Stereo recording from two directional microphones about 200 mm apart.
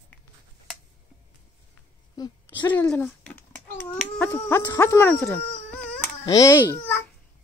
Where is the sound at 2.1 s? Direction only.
20° left (ahead or behind).